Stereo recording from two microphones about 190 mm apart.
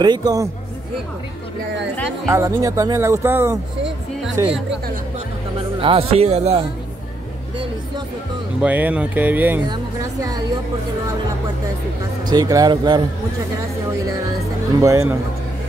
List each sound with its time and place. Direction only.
0.0 s speech: 20° right (ahead or behind)
2.3 s speech: 15° right (ahead or behind)
5.8 s speech: 30° right (ahead or behind)
8.5 s speech: 10° right (ahead or behind)
12.3 s speech: 20° right (ahead or behind)
14.8 s speech: 15° right (ahead or behind)